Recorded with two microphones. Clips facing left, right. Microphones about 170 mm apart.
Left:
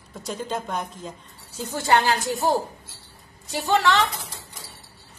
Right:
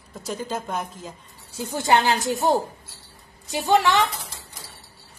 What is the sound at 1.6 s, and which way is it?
Speech, 15° right (ahead or behind).